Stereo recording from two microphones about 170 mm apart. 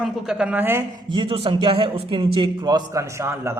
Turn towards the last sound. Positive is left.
turn(degrees=-15)  # may be behind; listen again after turning